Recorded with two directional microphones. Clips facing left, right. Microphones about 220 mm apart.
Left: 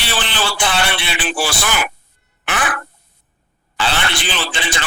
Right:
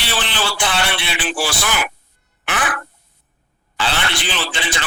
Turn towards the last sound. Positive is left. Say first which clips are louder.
# left 1 dB
turn(degrees=50)  # may be behind; listen again after turning